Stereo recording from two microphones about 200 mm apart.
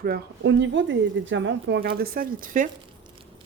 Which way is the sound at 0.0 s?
60° right (ahead or behind).